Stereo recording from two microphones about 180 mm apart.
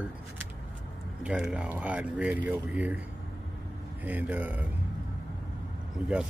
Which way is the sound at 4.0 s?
10° right (ahead or behind).